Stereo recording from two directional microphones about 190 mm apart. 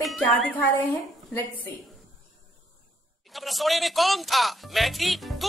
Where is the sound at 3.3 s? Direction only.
Centre (ahead or behind).